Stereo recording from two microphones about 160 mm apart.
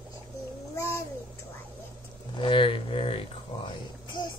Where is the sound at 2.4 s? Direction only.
30° left (ahead or behind).